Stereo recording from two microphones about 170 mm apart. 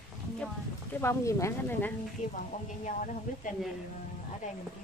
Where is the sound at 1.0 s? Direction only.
15° left (ahead or behind).